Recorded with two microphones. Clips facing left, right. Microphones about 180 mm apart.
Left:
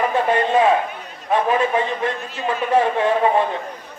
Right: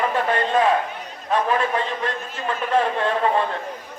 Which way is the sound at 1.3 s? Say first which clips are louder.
Left 3 dB; 15° left (ahead or behind).